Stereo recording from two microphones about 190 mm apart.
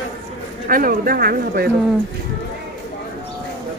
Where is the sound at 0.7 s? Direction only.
50° right (ahead or behind).